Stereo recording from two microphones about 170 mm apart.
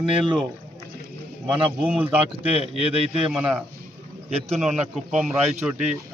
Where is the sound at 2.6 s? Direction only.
35° left (ahead or behind).